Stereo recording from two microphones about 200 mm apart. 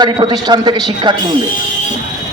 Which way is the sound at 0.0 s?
20° right (ahead or behind).